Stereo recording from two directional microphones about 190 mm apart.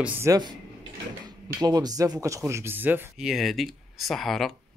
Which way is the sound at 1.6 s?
20° right (ahead or behind).